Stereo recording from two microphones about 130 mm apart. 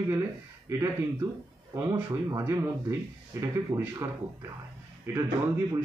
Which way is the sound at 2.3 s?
25° right (ahead or behind).